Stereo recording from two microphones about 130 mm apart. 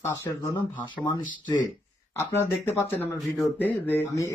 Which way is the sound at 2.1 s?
15° left (ahead or behind).